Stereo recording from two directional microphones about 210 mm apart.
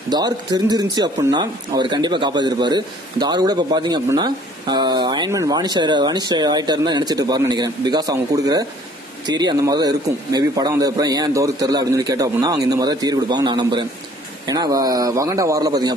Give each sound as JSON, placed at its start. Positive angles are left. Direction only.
{"t": 0.1, "sound": "a man's voice", "side_deg": -20}